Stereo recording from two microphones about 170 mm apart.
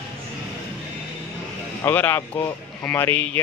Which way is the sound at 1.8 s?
10° left (ahead or behind).